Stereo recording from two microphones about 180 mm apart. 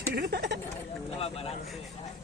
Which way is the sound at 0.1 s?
60° right (ahead or behind).